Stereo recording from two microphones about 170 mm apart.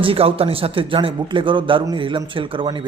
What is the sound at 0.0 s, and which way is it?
A man's voice, 35° right (ahead or behind).